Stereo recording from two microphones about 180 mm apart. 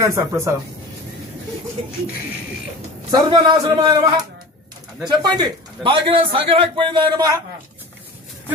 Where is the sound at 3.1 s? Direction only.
25° right (ahead or behind).